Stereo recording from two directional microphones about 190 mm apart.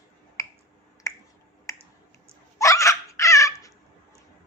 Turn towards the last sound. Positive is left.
turn(degrees=15)  # may be behind; listen again after turning